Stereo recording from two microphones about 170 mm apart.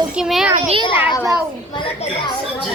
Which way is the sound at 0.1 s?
5° right (ahead or behind).